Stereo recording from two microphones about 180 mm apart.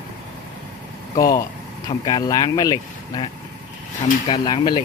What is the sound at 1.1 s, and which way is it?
Speech, 20° left (ahead or behind).